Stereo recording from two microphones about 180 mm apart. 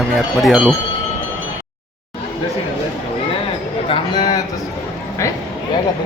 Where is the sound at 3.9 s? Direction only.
25° left (ahead or behind).